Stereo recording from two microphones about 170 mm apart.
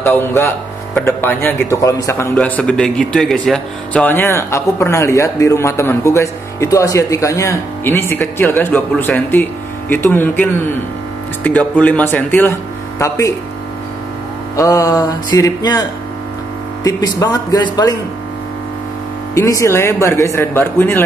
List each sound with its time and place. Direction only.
0.0 s speech: 10° left (ahead or behind)
2.3 s speech: 10° left (ahead or behind)
14.6 s speech: 20° left (ahead or behind)
19.3 s speech: 20° left (ahead or behind)